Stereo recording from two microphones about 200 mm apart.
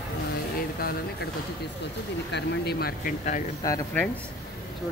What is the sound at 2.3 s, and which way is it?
Speech, 55° left (ahead or behind).